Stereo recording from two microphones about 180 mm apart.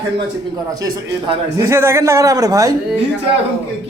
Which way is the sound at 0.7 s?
20° right (ahead or behind).